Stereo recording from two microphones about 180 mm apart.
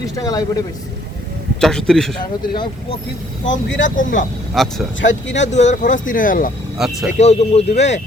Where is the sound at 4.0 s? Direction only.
45° left (ahead or behind).